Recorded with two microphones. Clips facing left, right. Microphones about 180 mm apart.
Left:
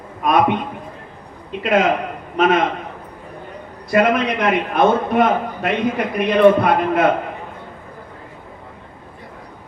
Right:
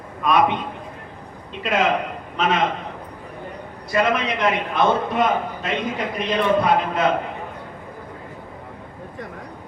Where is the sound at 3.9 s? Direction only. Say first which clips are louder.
Left 5 dB; 55° left (ahead or behind).